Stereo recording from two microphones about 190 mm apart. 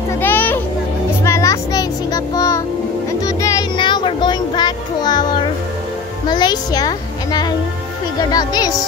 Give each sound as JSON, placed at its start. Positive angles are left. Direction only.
{"t": 0.2, "sound": "children playing", "side_deg": 10}
{"t": 1.2, "sound": "child singing", "side_deg": 15}
{"t": 3.1, "sound": "music", "side_deg": 15}
{"t": 6.2, "sound": "a child's voice", "side_deg": 20}